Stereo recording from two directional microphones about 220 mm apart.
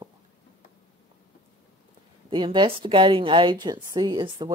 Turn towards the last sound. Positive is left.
turn(degrees=-20)  # may be behind; listen again after turning